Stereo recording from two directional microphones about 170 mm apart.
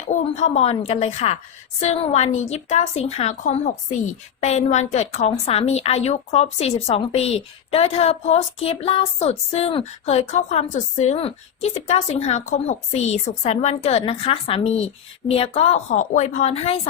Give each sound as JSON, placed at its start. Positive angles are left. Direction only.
{"t": 0.1, "sound": "a woman's voice", "side_deg": 40}